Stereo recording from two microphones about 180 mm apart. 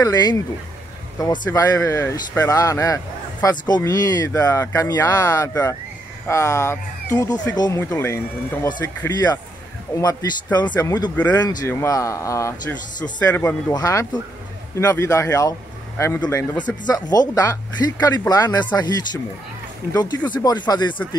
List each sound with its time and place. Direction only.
0.0 s speech: 20° left (ahead or behind)
19.9 s speech: 20° left (ahead or behind)